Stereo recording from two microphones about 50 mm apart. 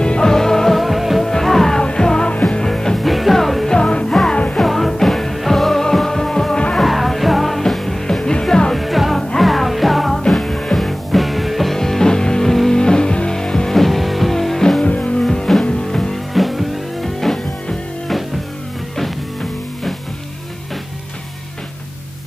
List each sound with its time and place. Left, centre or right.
0.0 s music: centre
3.7 s music: centre
6.8 s music: centre
8.7 s music: centre
14.8 s music: left
15.2 s music: centre
16.3 s music: centre